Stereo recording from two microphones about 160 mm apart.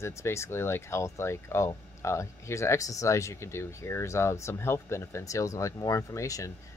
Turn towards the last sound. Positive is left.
turn(degrees=20)  # may be behind; listen again after turning